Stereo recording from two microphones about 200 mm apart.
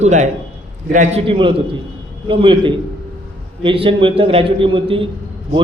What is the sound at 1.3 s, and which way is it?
A man's voice, 25° right (ahead or behind).